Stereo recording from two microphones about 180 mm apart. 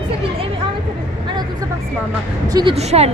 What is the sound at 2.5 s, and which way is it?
Speech, 20° right (ahead or behind).